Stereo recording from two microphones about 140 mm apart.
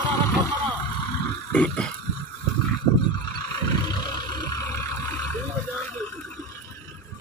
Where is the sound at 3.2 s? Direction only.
30° left (ahead or behind).